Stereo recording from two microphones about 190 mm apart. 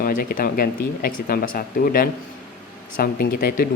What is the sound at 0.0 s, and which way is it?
Speech, 50° left (ahead or behind).